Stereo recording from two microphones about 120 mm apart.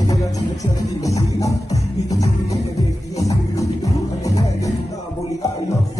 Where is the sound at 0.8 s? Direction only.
30° left (ahead or behind).